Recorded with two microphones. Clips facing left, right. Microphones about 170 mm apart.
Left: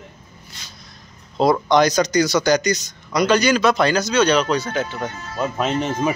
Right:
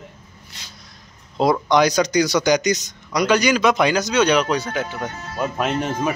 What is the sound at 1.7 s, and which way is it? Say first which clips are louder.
Speech: left 1 dB; 10° right (ahead or behind).